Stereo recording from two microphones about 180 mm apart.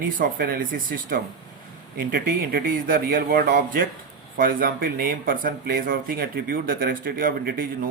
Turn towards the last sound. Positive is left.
turn(degrees=-55)  # may be behind; listen again after turning